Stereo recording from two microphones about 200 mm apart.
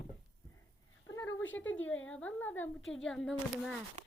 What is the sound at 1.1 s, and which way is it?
A woman's voice, 15° left (ahead or behind).